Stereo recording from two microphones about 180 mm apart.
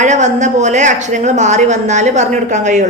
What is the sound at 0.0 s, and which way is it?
A woman's voice, 40° right (ahead or behind).